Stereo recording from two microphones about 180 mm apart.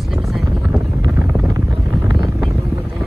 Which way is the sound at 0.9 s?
15° right (ahead or behind).